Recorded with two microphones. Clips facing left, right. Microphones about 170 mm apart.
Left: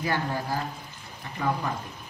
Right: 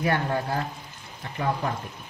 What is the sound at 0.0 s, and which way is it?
Speech, 55° right (ahead or behind).